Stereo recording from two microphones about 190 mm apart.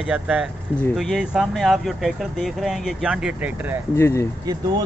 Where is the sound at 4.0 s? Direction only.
15° left (ahead or behind).